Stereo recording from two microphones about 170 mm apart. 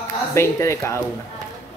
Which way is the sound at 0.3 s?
15° left (ahead or behind).